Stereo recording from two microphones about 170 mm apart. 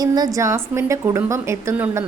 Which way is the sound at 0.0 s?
20° right (ahead or behind).